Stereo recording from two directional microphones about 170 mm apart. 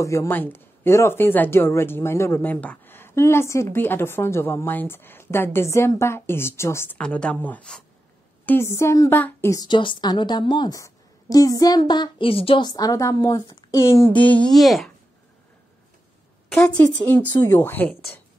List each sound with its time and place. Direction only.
0.0 s a woman's voice: 15° left (ahead or behind); by 14.9 s centre (ahead or behind)
16.5 s speech: 10° left (ahead or behind)